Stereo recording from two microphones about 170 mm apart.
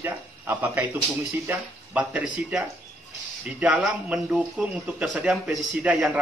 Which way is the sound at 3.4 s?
5° right (ahead or behind).